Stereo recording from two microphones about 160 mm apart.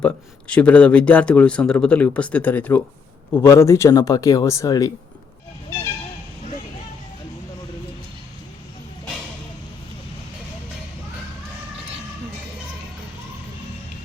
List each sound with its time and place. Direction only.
0.0 s speech: 5° left (ahead or behind)